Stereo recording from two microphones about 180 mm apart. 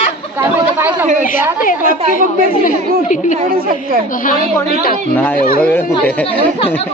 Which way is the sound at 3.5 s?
55° right (ahead or behind).